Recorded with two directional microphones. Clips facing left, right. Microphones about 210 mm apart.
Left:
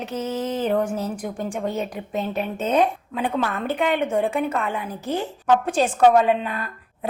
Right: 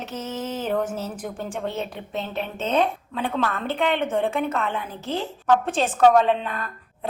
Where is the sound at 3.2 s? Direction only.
15° left (ahead or behind).